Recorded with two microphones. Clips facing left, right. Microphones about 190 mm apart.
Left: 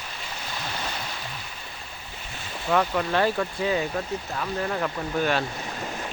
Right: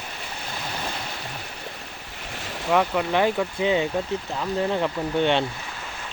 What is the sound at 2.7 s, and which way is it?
Speech, 10° right (ahead or behind).